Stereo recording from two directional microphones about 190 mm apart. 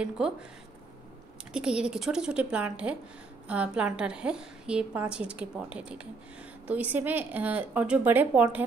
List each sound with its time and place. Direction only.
0.2 s a woman's voice: 5° right (ahead or behind)
1.5 s a woman's voice: 5° right (ahead or behind)